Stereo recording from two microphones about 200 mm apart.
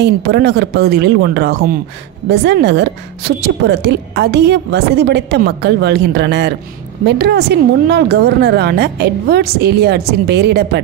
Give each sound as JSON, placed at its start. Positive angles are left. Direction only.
{"t": 0.0, "sound": "a woman's voice", "side_deg": -55}